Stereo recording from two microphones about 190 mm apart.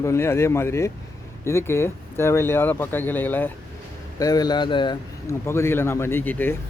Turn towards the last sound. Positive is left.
turn(degrees=10)  # may be behind; listen again after turning